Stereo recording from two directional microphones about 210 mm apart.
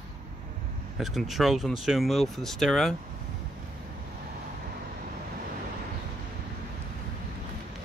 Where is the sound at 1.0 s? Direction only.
Centre (ahead or behind).